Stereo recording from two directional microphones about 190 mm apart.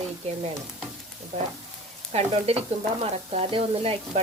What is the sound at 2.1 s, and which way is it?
Sizzle, 30° right (ahead or behind).